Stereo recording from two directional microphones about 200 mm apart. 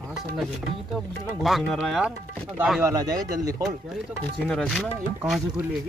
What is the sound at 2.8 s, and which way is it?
Speech, 20° right (ahead or behind).